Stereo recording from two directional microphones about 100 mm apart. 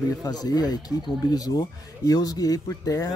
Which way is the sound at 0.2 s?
40° left (ahead or behind).